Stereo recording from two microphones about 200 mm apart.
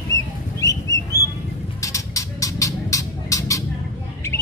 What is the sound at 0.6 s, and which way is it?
Bird, 15° left (ahead or behind).